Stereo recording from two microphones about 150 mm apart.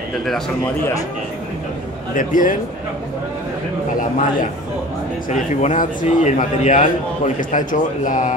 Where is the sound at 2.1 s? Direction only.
65° left (ahead or behind).